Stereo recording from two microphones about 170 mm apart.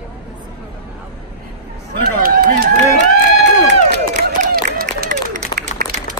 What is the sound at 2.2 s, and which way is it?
Speech, 55° right (ahead or behind).